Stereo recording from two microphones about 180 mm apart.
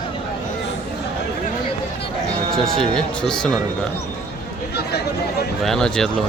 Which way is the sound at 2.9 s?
5° left (ahead or behind).